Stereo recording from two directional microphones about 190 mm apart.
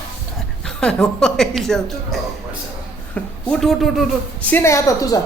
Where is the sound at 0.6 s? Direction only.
5° left (ahead or behind).